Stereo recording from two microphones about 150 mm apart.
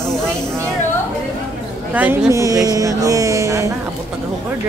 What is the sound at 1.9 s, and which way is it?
Speech, 10° right (ahead or behind).